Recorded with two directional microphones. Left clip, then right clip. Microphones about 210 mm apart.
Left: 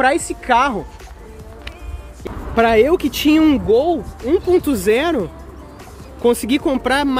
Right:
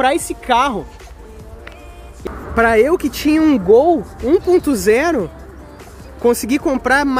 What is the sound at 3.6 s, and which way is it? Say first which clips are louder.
Speech: right 4 dB; 30° right (ahead or behind).